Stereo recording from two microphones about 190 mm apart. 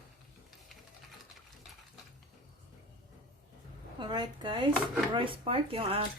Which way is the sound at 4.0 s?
25° right (ahead or behind).